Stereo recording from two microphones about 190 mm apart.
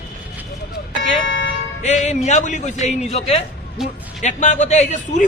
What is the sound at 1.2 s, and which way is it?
Speech, 70° left (ahead or behind).